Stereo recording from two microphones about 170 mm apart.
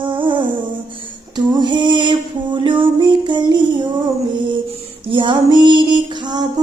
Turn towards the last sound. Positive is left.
turn(degrees=-25)  # may be behind; listen again after turning